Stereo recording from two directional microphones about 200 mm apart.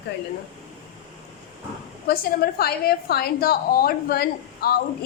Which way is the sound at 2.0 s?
50° left (ahead or behind).